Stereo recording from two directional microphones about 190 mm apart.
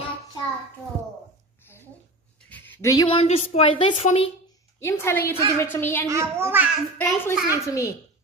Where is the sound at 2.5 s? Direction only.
15° left (ahead or behind).